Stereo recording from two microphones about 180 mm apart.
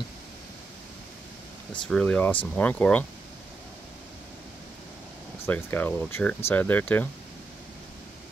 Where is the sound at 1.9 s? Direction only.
5° left (ahead or behind).